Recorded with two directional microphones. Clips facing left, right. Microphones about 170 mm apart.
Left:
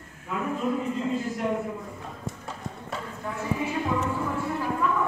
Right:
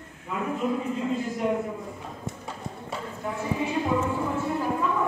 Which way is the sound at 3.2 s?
15° right (ahead or behind).